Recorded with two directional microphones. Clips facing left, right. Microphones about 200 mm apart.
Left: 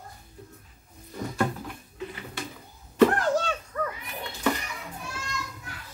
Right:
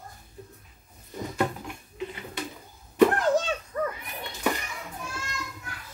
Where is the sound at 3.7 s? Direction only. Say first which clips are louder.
Right 3 dB; 25° right (ahead or behind).